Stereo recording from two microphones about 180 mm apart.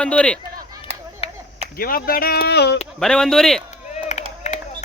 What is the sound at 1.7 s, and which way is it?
Speech, 55° left (ahead or behind).